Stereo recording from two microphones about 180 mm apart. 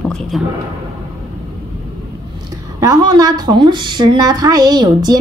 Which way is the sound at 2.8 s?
20° right (ahead or behind).